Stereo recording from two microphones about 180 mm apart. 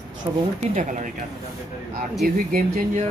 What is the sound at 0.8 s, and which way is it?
Speech, 45° right (ahead or behind).